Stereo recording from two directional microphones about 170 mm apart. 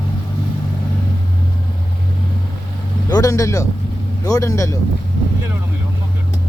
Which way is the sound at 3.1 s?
20° left (ahead or behind).